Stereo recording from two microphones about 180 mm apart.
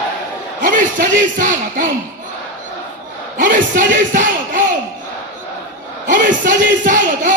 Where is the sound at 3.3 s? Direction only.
50° right (ahead or behind).